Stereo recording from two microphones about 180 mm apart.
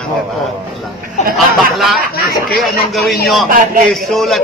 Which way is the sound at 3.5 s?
45° right (ahead or behind).